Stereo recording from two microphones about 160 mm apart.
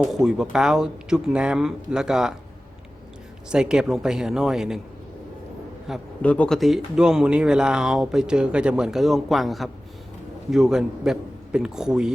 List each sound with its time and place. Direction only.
0.0 s speech: centre (ahead or behind)
3.5 s speech: 5° right (ahead or behind)
5.9 s speech: centre (ahead or behind)